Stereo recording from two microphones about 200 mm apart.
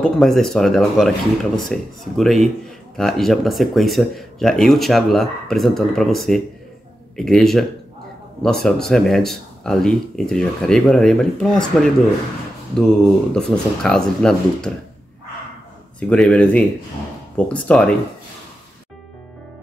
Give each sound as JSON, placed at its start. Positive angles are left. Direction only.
{"t": 0.0, "sound": "speech", "side_deg": 0}
{"t": 16.0, "sound": "speech", "side_deg": 5}